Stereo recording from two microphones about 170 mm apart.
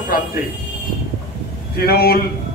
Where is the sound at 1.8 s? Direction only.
65° left (ahead or behind).